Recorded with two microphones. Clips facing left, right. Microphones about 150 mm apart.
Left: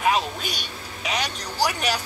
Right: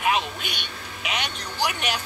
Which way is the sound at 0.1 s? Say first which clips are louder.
Left 1 dB; 40° left (ahead or behind).